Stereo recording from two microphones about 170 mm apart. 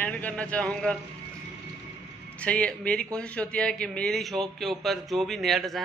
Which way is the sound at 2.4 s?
5° left (ahead or behind).